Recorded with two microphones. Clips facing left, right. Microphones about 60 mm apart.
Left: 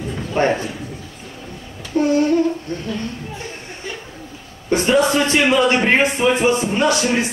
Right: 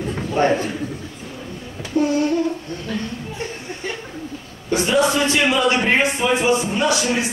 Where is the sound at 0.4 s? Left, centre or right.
Left.